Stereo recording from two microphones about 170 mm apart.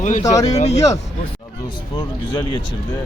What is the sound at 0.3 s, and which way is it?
Speech, 20° left (ahead or behind).